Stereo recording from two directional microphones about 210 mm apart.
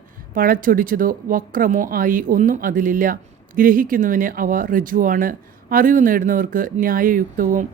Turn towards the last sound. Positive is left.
turn(degrees=-40)  # may be behind; listen again after turning